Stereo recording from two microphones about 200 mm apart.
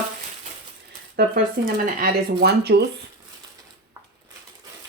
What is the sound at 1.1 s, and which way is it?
Speech, 45° right (ahead or behind).